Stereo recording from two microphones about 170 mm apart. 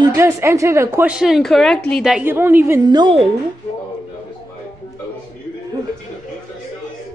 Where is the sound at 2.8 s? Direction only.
25° right (ahead or behind).